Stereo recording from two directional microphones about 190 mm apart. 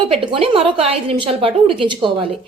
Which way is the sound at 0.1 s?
30° right (ahead or behind).